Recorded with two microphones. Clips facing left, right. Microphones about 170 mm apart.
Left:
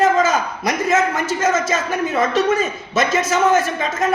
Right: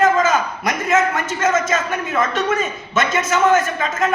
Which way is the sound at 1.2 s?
35° left (ahead or behind).